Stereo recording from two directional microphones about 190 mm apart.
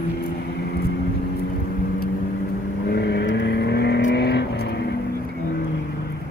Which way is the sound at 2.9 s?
60° left (ahead or behind).